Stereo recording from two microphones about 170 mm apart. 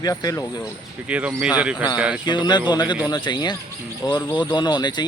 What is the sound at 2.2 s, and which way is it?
A man's voice, 25° left (ahead or behind).